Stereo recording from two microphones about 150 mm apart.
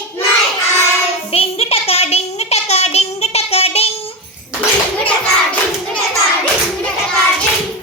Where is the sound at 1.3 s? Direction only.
40° left (ahead or behind).